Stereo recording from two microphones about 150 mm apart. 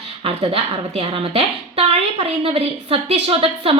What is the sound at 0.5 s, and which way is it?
A woman's voice, 40° right (ahead or behind).